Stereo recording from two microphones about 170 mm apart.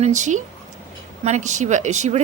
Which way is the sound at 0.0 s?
45° right (ahead or behind).